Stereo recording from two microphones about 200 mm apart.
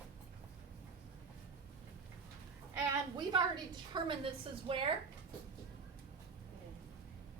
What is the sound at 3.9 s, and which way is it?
A woman's voice, 25° right (ahead or behind).